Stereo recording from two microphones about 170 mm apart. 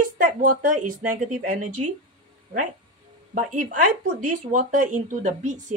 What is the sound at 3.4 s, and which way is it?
Speech, 50° right (ahead or behind).